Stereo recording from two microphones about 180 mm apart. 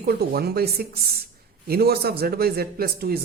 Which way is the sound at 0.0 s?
60° right (ahead or behind).